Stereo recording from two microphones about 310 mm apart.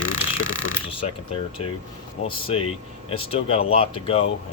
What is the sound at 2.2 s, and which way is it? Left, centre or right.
A man's voice, centre.